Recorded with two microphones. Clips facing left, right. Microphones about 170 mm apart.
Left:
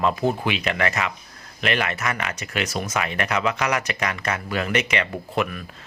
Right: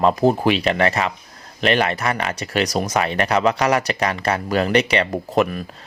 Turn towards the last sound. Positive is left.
turn(degrees=-35)  # may be behind; listen again after turning